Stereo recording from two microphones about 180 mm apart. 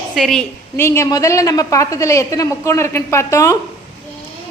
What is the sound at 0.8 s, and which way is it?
Speech, 15° left (ahead or behind).